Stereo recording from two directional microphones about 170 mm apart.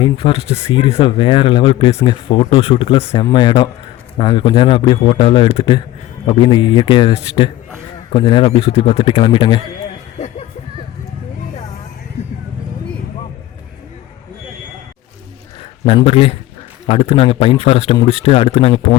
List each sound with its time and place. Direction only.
0.0 s a man's voice: 30° left (ahead or behind)
15.9 s a man's voice: 35° left (ahead or behind)